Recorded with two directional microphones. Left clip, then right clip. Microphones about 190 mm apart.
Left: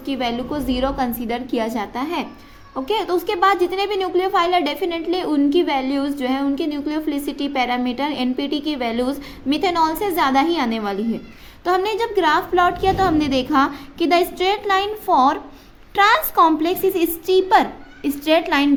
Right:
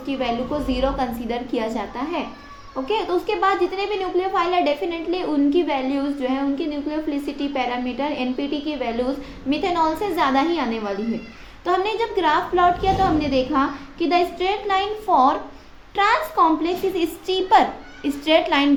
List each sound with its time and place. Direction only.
0.0 s a woman's voice: 40° left (ahead or behind)